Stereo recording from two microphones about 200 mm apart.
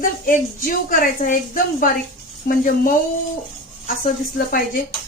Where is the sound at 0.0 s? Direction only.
45° left (ahead or behind).